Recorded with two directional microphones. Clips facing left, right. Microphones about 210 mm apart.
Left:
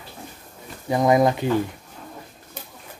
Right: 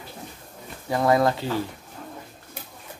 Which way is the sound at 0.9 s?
20° left (ahead or behind).